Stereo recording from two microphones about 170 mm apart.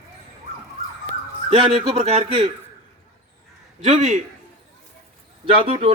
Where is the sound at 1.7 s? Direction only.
35° right (ahead or behind).